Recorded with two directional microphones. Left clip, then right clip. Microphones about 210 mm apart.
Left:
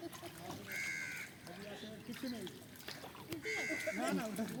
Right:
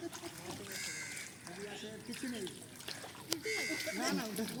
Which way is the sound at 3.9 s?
40° left (ahead or behind).